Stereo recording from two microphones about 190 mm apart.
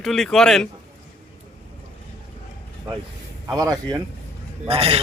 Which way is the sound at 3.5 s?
20° right (ahead or behind).